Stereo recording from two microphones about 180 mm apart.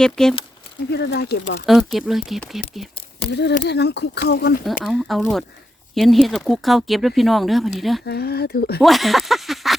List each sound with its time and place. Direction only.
0.0 s speech: 5° left (ahead or behind)
0.9 s speech: 65° left (ahead or behind)
1.6 s speech: centre (ahead or behind)
3.6 s speech: 70° left (ahead or behind)
4.8 s speech: centre (ahead or behind)
8.0 s speech: 60° left (ahead or behind)
8.8 s speech: centre (ahead or behind)